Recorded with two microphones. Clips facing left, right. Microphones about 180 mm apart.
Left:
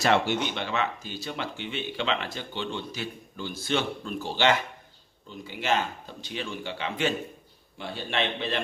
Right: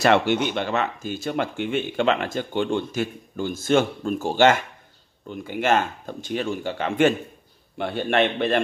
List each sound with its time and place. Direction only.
0.0 s a man's voice: 65° right (ahead or behind)